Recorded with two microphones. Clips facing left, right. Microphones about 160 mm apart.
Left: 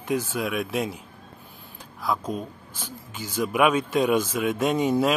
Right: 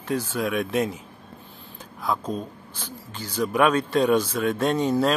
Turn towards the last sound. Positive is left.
turn(degrees=10)  # may be behind; listen again after turning